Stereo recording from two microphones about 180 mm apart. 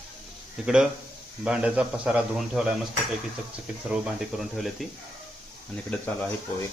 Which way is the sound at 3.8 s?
5° right (ahead or behind).